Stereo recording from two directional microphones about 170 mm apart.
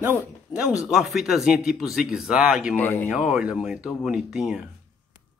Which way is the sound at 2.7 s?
10° left (ahead or behind).